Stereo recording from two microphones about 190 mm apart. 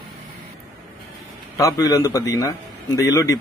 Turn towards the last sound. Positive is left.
turn(degrees=15)  # may be behind; listen again after turning